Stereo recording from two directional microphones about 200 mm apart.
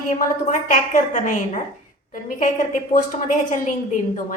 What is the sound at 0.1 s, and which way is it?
A woman's voice, 40° left (ahead or behind).